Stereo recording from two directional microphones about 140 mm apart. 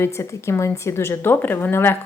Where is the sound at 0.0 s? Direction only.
20° left (ahead or behind).